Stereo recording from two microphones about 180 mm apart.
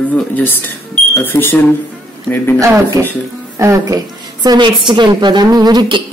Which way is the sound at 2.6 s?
15° right (ahead or behind).